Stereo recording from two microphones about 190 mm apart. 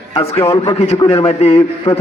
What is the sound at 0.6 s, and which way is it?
A man's voice, 30° left (ahead or behind).